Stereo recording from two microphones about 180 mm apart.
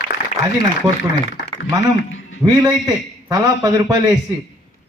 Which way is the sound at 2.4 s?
20° right (ahead or behind).